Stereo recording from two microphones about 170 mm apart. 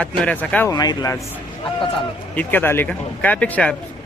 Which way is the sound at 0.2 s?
5° left (ahead or behind).